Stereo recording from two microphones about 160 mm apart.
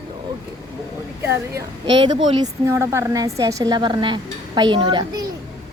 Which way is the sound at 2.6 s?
15° right (ahead or behind).